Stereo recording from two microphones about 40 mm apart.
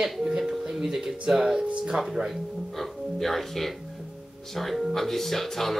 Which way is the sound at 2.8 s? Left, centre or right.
Centre.